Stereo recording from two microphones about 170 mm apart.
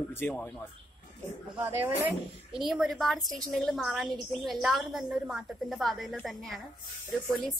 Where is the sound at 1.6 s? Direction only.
10° right (ahead or behind).